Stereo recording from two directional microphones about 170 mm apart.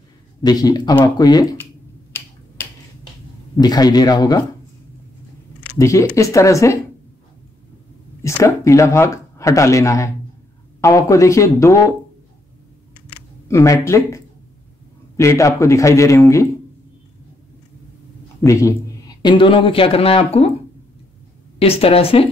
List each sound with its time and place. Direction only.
0.4 s a man's voice: 25° left (ahead or behind)
3.6 s a man's voice: 25° left (ahead or behind)
5.8 s speech: 20° left (ahead or behind)
8.2 s speech: 15° left (ahead or behind)
13.1 s a sound: 15° left (ahead or behind)
15.1 s speech: 15° left (ahead or behind)
18.4 s speech: 20° left (ahead or behind)
19.2 s speech: 30° left (ahead or behind)
21.5 s speech: 35° left (ahead or behind)